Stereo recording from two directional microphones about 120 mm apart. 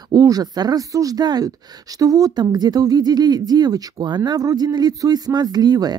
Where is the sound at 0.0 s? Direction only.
30° right (ahead or behind).